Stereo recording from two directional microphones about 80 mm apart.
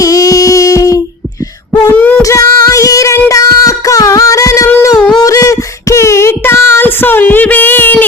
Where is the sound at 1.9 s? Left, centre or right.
Centre.